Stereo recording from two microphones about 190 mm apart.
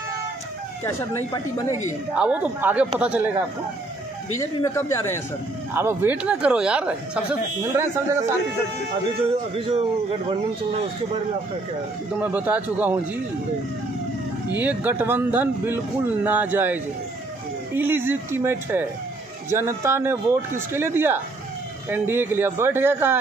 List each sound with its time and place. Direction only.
0.9 s speech: 15° left (ahead or behind)
2.1 s a man's voice: 5° right (ahead or behind)
4.4 s speech: 15° left (ahead or behind)
5.8 s a man's voice: 10° right (ahead or behind)
9.3 s speech: 30° right (ahead or behind)
12.2 s a man's voice: 10° right (ahead or behind)
14.5 s a man's voice: 10° right (ahead or behind)